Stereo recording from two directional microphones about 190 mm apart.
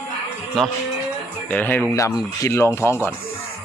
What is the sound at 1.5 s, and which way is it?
Speech, 10° left (ahead or behind).